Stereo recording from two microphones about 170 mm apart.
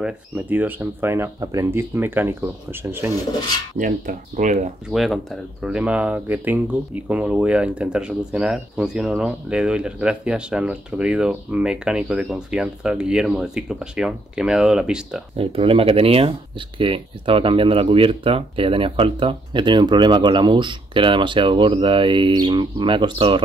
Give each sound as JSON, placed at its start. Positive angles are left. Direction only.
{"t": 0.0, "sound": "speech", "side_deg": -10}
{"t": 3.7, "sound": "speech", "side_deg": -50}
{"t": 4.8, "sound": "speech", "side_deg": 0}
{"t": 15.3, "sound": "speech", "side_deg": -35}